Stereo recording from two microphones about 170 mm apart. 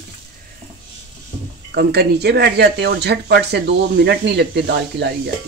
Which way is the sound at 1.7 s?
75° right (ahead or behind).